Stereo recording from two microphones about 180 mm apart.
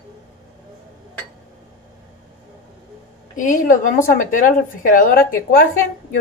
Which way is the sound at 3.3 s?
45° left (ahead or behind).